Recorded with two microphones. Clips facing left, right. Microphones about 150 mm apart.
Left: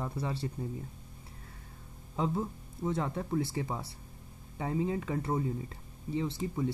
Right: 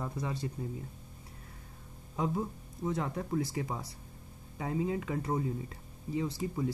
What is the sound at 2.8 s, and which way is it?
Speech, 30° left (ahead or behind).